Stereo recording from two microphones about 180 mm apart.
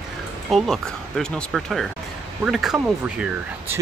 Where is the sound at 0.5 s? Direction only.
Centre (ahead or behind).